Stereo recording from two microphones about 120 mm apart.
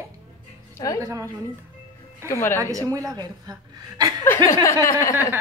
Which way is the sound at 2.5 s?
25° right (ahead or behind).